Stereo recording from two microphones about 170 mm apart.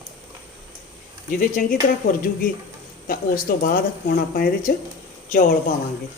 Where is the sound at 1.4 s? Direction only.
55° left (ahead or behind).